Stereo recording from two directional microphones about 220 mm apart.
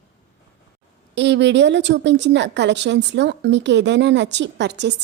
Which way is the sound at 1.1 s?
55° right (ahead or behind).